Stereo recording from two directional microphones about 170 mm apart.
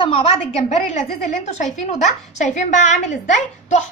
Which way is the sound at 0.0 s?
35° left (ahead or behind).